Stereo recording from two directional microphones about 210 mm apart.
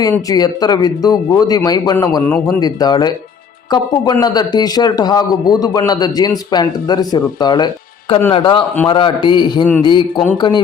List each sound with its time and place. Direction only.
0.0 s a man's voice: 15° left (ahead or behind)